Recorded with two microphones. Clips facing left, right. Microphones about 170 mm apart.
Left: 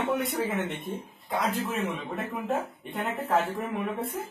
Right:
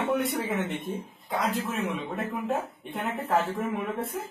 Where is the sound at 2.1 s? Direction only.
Centre (ahead or behind).